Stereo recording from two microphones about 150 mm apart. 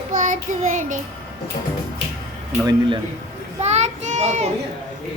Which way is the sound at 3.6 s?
50° right (ahead or behind).